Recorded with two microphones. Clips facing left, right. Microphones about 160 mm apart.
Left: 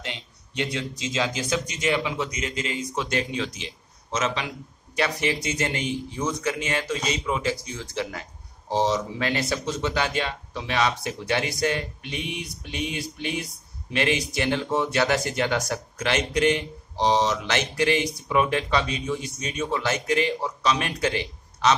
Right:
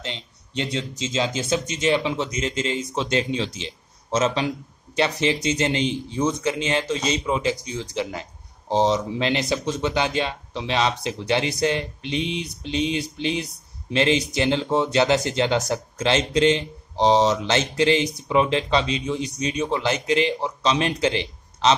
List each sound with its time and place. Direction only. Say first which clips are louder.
0.0 s speech: right 2 dB; 25° right (ahead or behind)